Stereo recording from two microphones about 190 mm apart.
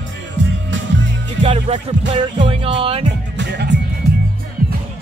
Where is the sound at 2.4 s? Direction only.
30° right (ahead or behind).